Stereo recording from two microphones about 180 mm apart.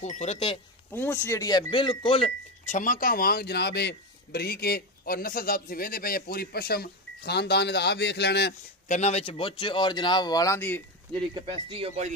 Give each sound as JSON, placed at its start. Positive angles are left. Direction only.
{"t": 0.0, "sound": "speech", "side_deg": 40}
{"t": 0.9, "sound": "speech", "side_deg": 10}
{"t": 2.8, "sound": "a man's voice", "side_deg": 50}
{"t": 8.8, "sound": "speech", "side_deg": 40}
{"t": 11.3, "sound": "speech", "side_deg": -30}